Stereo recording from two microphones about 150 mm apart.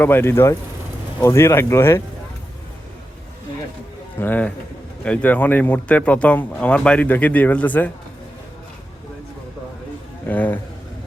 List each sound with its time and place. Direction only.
0.0 s speech: 15° left (ahead or behind)
4.2 s speech: 10° left (ahead or behind)
10.2 s speech: 10° left (ahead or behind)